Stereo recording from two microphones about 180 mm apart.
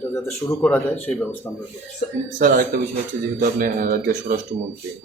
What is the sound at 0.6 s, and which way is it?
Speech, 10° left (ahead or behind).